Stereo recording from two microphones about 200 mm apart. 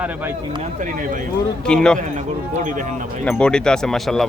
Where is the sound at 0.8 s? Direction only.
40° right (ahead or behind).